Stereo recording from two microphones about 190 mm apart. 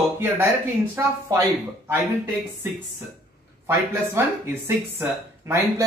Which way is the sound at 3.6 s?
15° right (ahead or behind).